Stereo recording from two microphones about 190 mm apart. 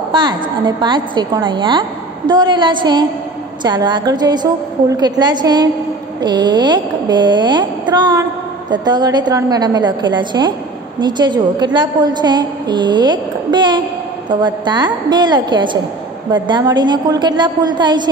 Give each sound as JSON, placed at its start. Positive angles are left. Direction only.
{"t": 0.1, "sound": "speech", "side_deg": -25}